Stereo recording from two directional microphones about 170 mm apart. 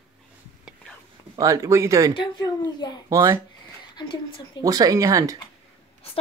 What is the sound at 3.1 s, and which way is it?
Speech, 20° right (ahead or behind).